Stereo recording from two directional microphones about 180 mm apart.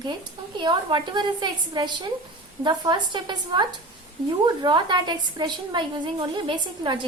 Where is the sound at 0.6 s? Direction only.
25° right (ahead or behind).